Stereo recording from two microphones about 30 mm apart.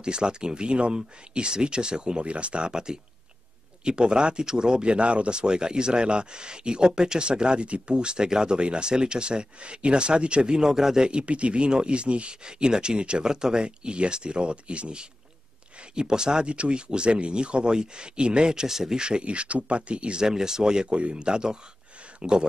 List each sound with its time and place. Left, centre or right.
0.0 s speech: right
2.7 s speech: right
7.9 s speech: right
11.1 s speech: right
13.2 s speech: right
18.9 s speech: right
20.2 s speech: centre